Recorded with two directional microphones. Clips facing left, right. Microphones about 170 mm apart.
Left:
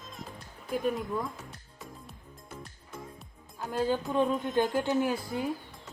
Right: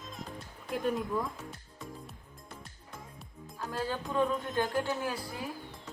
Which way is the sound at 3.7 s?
20° left (ahead or behind).